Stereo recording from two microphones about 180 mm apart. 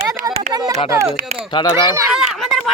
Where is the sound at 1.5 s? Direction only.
25° left (ahead or behind).